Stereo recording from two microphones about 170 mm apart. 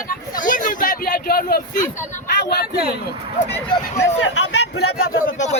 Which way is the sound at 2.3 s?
70° left (ahead or behind).